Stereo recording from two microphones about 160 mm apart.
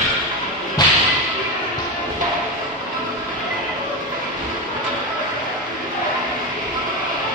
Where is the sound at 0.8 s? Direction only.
25° left (ahead or behind).